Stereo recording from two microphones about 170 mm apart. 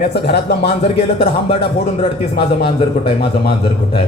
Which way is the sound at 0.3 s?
75° left (ahead or behind).